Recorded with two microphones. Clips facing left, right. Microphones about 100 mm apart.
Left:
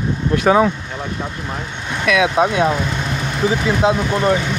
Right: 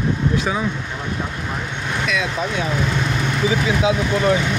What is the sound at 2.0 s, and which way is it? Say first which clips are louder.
Speech: left 9 dB; 65° left (ahead or behind).